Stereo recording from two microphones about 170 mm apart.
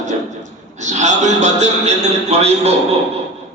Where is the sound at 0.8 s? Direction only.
45° right (ahead or behind).